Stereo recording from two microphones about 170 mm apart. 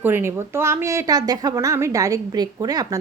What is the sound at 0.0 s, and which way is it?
A woman's voice, 15° right (ahead or behind).